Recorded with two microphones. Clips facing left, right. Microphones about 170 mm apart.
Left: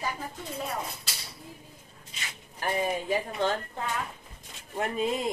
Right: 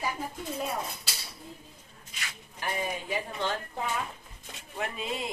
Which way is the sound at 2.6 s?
40° left (ahead or behind).